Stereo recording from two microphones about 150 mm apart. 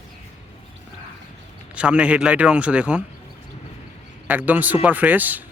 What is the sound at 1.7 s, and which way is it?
Speech, 5° right (ahead or behind).